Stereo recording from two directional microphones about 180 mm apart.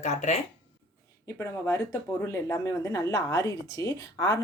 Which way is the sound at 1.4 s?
15° left (ahead or behind).